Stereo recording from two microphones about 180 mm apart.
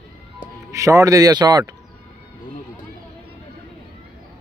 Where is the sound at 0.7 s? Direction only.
15° right (ahead or behind).